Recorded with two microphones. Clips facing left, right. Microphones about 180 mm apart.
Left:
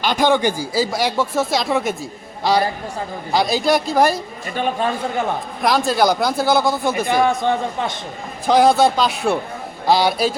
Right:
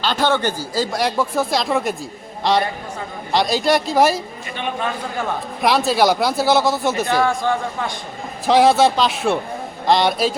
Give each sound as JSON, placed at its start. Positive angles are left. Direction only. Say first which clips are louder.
{"t": 0.0, "sound": "a man's voice", "louder": "left 2 dB", "side_deg": 15}
{"t": 4.5, "sound": "a man's voice", "louder": "left 4 dB", "side_deg": 40}
{"t": 5.6, "sound": "speech", "louder": "right 1 dB", "side_deg": -5}
{"t": 6.9, "sound": "a man's voice", "louder": "left 1 dB", "side_deg": 20}
{"t": 8.4, "sound": "speech", "louder": "even", "side_deg": 0}